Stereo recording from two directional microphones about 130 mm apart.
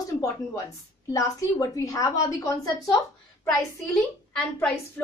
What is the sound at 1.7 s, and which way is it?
A woman's voice, 25° left (ahead or behind).